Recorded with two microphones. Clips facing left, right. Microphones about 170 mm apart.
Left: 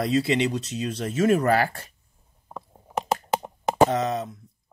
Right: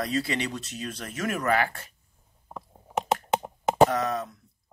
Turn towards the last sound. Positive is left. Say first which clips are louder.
# left 3 dB
turn(degrees=25)  # may be behind; listen again after turning